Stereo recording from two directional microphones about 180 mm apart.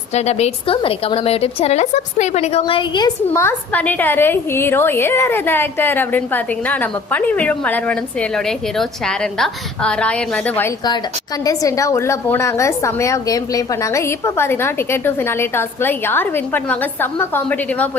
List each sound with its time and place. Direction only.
0.1 s a woman's voice: 35° left (ahead or behind)
3.3 s a woman's voice: 10° left (ahead or behind)